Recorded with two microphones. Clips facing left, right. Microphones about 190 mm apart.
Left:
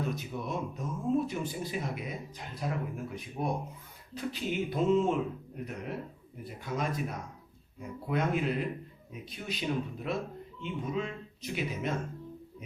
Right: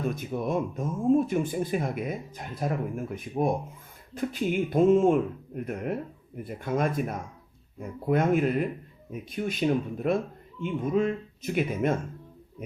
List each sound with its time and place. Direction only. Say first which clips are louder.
0.2 s speech: right 7 dB; 50° right (ahead or behind)